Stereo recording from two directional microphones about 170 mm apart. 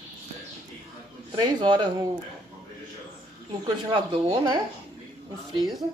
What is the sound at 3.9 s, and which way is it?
Speech, 25° right (ahead or behind).